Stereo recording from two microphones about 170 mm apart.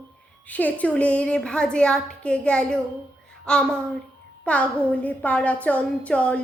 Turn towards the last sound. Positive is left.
turn(degrees=5)  # may be behind; listen again after turning